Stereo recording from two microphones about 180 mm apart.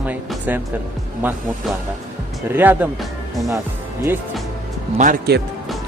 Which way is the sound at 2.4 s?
10° right (ahead or behind).